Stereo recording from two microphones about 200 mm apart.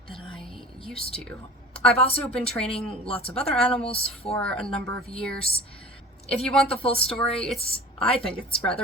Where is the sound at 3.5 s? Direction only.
Centre (ahead or behind).